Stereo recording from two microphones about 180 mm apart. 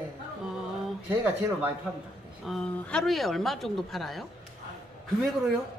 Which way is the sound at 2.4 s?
5° left (ahead or behind).